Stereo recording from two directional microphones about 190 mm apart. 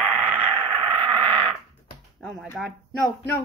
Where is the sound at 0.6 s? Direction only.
30° right (ahead or behind).